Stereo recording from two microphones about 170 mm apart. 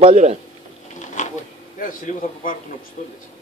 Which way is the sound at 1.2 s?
45° left (ahead or behind).